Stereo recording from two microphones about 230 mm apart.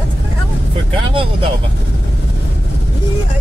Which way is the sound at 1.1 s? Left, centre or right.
Right.